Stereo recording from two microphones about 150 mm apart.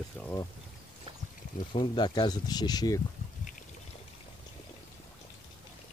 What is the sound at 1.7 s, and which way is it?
Speech, 30° left (ahead or behind).